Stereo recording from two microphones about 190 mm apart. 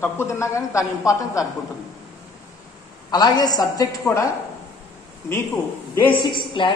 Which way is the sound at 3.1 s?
20° left (ahead or behind).